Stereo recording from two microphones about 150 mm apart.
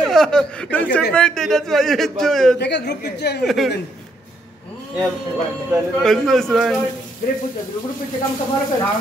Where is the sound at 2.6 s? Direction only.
90° left.